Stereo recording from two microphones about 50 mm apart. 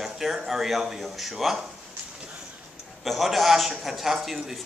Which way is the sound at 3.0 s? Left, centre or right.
Centre.